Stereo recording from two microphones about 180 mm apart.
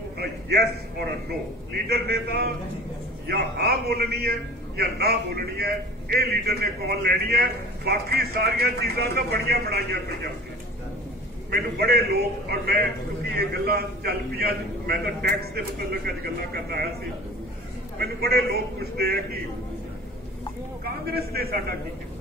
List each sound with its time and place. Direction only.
0.2 s a sound: 60° right (ahead or behind)
1.7 s a man's voice: 60° right (ahead or behind)
11.5 s a man's voice: 65° right (ahead or behind)
17.9 s a man's voice: 60° right (ahead or behind)
20.8 s a man's voice: 60° right (ahead or behind)